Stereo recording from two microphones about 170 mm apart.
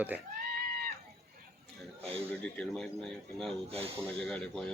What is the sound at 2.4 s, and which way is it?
Speech, 5° left (ahead or behind).